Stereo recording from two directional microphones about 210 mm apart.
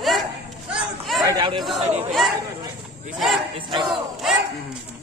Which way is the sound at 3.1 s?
Centre (ahead or behind).